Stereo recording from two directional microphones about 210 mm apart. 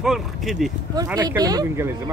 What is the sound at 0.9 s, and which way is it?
Speech, 15° right (ahead or behind).